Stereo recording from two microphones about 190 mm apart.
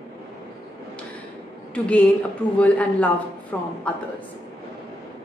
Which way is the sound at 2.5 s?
5° left (ahead or behind).